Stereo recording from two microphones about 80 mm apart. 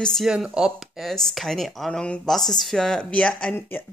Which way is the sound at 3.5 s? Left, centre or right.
Left.